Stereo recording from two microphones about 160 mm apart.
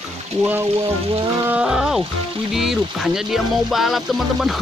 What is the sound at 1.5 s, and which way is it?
Speech, 5° right (ahead or behind).